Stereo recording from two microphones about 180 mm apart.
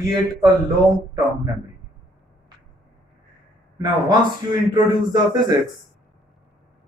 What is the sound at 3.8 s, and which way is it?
A man's voice, 25° right (ahead or behind).